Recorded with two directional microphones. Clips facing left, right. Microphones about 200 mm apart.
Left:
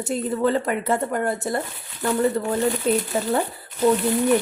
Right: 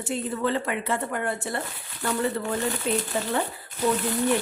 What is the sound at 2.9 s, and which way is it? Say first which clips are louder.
Speech: left 5 dB; 40° left (ahead or behind).